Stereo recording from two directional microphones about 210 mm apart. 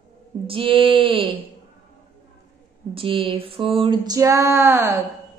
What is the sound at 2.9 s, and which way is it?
Female singing, 25° right (ahead or behind).